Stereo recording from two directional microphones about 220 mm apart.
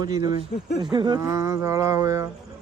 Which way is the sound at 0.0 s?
20° right (ahead or behind).